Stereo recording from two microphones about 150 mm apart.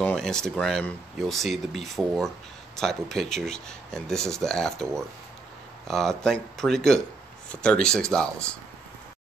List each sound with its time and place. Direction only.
0.0 s speech: 5° left (ahead or behind)